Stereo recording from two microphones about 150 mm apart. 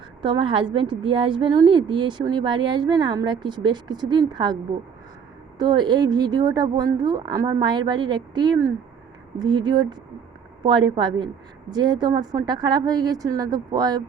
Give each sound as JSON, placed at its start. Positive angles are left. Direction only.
{"t": 0.2, "sound": "a woman's voice", "side_deg": -35}
{"t": 5.5, "sound": "a woman's voice", "side_deg": -30}